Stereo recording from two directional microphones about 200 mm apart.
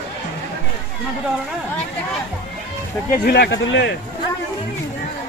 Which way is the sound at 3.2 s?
55° left (ahead or behind).